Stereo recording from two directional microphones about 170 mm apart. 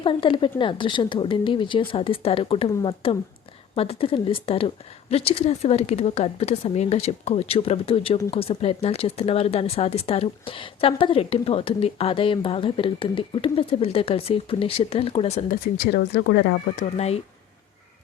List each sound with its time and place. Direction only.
0.0 s speech: 30° left (ahead or behind)
15.6 s speech: 75° left (ahead or behind); by 16.6 s 90° left
16.7 s speech: 40° left (ahead or behind)